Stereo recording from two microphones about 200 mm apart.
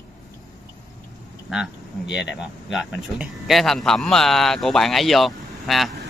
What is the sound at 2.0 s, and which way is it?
Speech, 60° left (ahead or behind).